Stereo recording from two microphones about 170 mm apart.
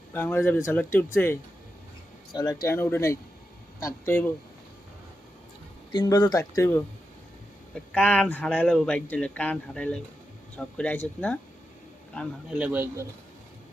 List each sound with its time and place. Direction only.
0.1 s speech: 10° left (ahead or behind)
2.3 s speech: 25° left (ahead or behind)
2.6 s speech: 15° left (ahead or behind)
5.9 s speech: 25° left (ahead or behind)
7.9 s speech: 5° left (ahead or behind)
12.5 s a man's voice: 10° right (ahead or behind)